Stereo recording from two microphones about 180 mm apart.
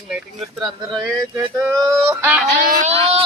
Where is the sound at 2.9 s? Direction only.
35° right (ahead or behind).